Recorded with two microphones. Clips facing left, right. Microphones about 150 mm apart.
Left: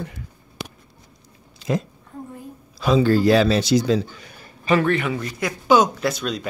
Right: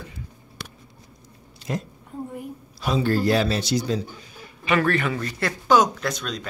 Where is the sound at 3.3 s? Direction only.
90° left.